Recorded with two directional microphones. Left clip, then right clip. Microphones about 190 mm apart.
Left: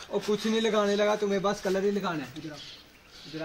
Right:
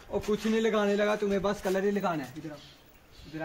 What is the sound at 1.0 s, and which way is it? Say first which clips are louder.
Speech: left 2 dB; 30° left (ahead or behind).